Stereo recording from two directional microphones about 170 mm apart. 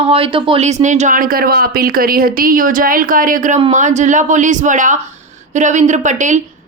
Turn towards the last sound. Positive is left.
turn(degrees=-45)  # may be behind; listen again after turning